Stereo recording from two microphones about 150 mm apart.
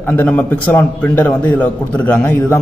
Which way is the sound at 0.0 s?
10° left (ahead or behind).